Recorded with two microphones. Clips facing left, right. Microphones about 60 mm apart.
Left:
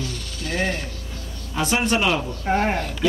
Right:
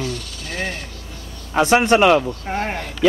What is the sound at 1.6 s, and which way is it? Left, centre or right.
Speech, right.